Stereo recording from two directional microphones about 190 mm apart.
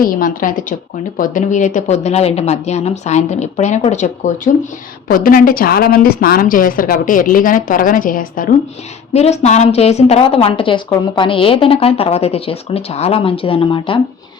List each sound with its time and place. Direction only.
0.0 s a woman's voice: 45° left (ahead or behind)
9.1 s a woman's voice: 35° left (ahead or behind)